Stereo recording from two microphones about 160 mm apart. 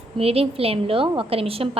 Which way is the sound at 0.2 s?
40° right (ahead or behind).